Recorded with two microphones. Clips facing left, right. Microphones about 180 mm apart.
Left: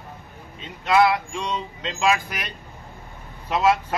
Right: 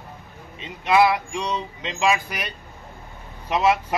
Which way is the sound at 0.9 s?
15° right (ahead or behind).